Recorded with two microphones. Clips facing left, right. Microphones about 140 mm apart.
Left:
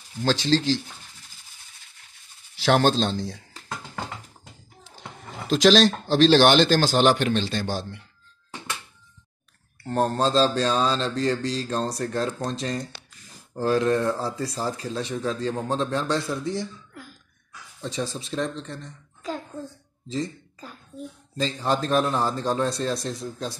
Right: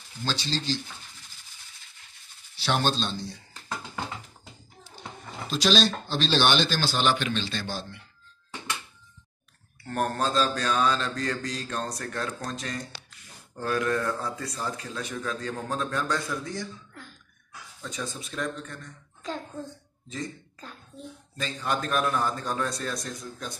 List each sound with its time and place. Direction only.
0.2 s speech: 90° left
2.6 s speech: 90° left
5.5 s speech: 90° left; by 7.8 s 70° left (ahead or behind)
9.8 s speech: 25° left (ahead or behind)
17.0 s a sound: 10° left (ahead or behind)
17.8 s speech: 35° left (ahead or behind)
19.2 s a sound: 5° left (ahead or behind)
21.4 s speech: 30° left (ahead or behind)